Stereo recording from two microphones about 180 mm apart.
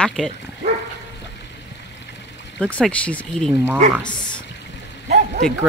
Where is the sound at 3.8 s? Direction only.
40° right (ahead or behind).